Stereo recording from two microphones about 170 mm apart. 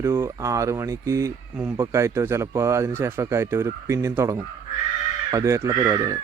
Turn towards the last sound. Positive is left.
turn(degrees=-20)  # may be behind; listen again after turning